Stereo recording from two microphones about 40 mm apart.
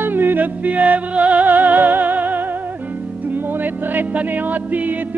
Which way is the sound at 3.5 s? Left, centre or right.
Right.